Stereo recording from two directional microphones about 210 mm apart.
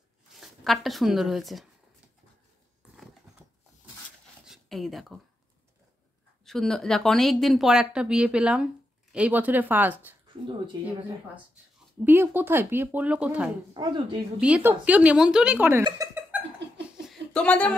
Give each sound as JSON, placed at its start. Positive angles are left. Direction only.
{"t": 0.4, "sound": "speech", "side_deg": 0}
{"t": 4.5, "sound": "speech", "side_deg": 0}
{"t": 6.4, "sound": "a woman's voice", "side_deg": 0}
{"t": 12.0, "sound": "speech", "side_deg": -10}
{"t": 13.8, "sound": "speech", "side_deg": -20}
{"t": 14.4, "sound": "speech", "side_deg": -5}
{"t": 15.8, "sound": "a sound", "side_deg": -15}
{"t": 17.0, "sound": "a sound", "side_deg": 0}